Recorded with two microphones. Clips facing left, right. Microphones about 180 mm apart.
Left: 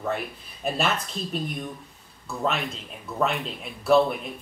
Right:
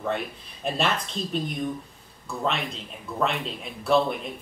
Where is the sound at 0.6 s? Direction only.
5° left (ahead or behind).